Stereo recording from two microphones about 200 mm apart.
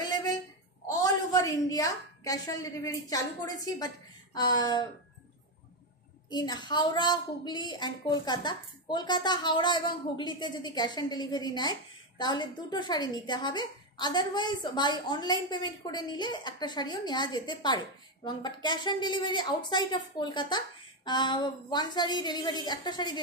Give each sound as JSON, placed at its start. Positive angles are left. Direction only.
{"t": 0.8, "sound": "a woman's voice", "side_deg": 15}
{"t": 6.3, "sound": "a woman's voice", "side_deg": 20}